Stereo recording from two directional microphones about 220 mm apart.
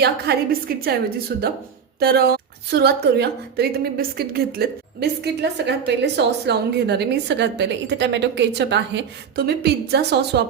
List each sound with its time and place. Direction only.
0.3 s a woman's voice: 45° right (ahead or behind)